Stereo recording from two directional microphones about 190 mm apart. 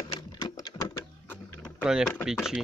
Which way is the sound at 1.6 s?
Centre (ahead or behind).